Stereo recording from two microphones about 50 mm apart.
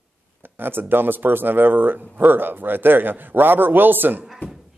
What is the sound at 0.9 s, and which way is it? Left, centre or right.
Speech, right.